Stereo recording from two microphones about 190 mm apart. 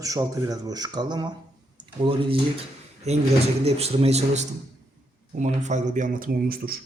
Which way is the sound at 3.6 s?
30° right (ahead or behind).